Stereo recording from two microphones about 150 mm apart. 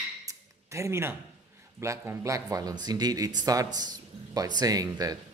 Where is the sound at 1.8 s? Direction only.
20° right (ahead or behind).